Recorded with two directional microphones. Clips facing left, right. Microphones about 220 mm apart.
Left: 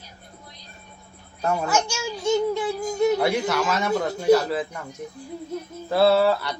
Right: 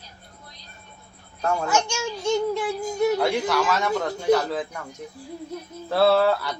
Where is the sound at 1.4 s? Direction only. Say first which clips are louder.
Even; 5° left (ahead or behind).